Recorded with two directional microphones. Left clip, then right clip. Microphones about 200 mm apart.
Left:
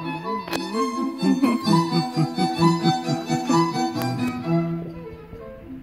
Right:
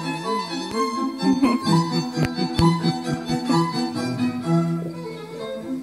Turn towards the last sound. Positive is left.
turn(degrees=-50)  # may be behind; listen again after turning